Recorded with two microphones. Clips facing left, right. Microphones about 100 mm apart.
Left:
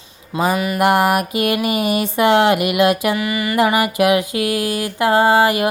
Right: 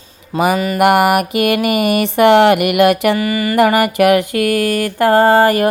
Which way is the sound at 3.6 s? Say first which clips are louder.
Right 4 dB; 55° right (ahead or behind).